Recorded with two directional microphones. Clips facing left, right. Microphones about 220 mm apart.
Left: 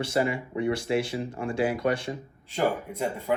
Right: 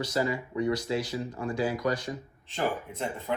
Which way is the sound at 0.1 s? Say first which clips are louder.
Left 3 dB; 25° left (ahead or behind).